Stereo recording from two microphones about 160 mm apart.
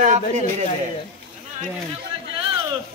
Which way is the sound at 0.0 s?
50° right (ahead or behind).